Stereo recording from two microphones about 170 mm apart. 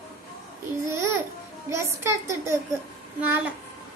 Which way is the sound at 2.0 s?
15° right (ahead or behind).